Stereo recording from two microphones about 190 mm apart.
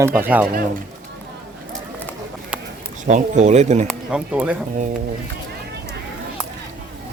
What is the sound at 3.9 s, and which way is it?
Speech, 5° right (ahead or behind).